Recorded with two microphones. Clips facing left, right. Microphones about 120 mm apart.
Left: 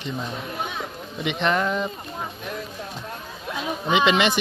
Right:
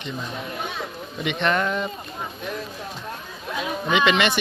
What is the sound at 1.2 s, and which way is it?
Speech, 20° left (ahead or behind).